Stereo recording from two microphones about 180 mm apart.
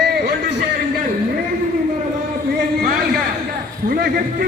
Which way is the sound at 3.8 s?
55° right (ahead or behind).